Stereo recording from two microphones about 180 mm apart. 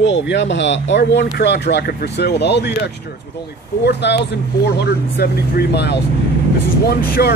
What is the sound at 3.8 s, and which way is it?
Speech, 70° left (ahead or behind).